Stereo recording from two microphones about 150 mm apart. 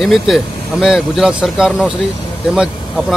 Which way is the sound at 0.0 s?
Centre (ahead or behind).